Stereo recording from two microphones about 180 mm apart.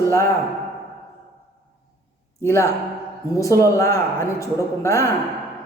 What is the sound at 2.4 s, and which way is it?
Speech, 15° left (ahead or behind).